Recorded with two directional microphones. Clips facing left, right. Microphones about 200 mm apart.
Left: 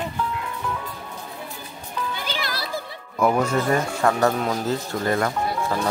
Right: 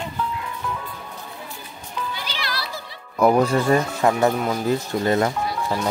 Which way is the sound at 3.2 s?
35° right (ahead or behind).